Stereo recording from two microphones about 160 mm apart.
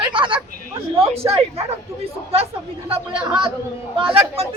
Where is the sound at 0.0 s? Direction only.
30° right (ahead or behind).